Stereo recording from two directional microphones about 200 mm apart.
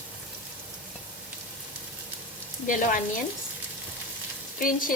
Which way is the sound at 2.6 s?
40° left (ahead or behind).